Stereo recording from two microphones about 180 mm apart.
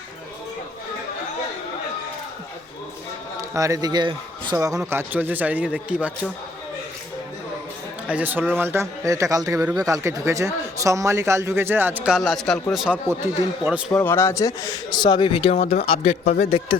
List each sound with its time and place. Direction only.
3.5 s a man's voice: 20° right (ahead or behind)
8.1 s a man's voice: 10° right (ahead or behind)
13.9 s a man's voice: 10° left (ahead or behind); by 16.7 s 30° left (ahead or behind)